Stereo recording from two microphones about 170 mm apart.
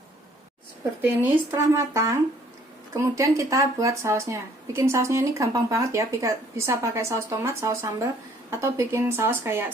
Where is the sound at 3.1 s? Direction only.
20° right (ahead or behind).